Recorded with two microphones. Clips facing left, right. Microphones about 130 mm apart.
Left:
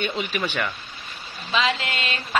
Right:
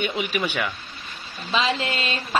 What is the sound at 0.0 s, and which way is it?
Speech, 10° right (ahead or behind).